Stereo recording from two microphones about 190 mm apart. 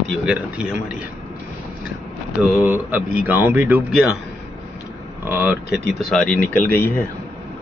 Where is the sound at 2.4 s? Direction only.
10° right (ahead or behind).